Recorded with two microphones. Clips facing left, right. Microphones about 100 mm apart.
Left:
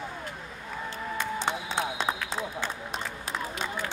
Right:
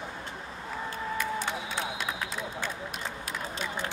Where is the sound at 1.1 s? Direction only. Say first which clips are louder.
Left 2 dB; 25° left (ahead or behind).